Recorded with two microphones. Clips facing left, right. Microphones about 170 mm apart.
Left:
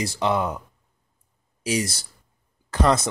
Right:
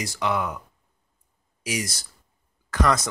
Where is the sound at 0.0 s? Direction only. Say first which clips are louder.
Left 3 dB; 30° left (ahead or behind).